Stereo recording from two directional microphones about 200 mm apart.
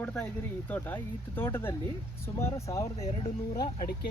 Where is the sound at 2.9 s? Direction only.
30° left (ahead or behind).